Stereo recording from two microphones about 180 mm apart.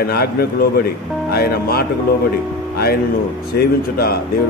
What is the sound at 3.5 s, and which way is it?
Speech, 60° left (ahead or behind).